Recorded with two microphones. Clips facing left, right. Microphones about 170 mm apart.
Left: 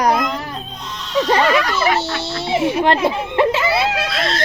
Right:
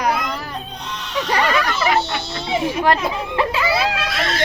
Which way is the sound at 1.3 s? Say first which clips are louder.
Left 2 dB; 25° left (ahead or behind).